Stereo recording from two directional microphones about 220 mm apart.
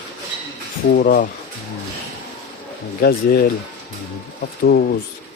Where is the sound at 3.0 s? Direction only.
45° left (ahead or behind).